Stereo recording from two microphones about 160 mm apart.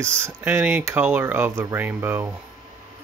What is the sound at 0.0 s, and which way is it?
Speech, 15° right (ahead or behind).